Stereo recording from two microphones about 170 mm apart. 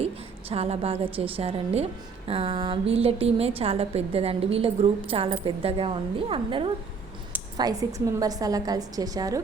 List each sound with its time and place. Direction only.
0.0 s a woman's voice: 35° right (ahead or behind)